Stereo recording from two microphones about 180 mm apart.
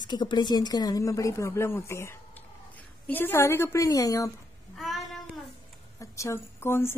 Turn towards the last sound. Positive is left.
turn(degrees=15)  # may be behind; listen again after turning